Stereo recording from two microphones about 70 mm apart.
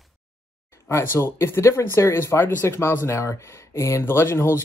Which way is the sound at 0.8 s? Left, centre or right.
Left.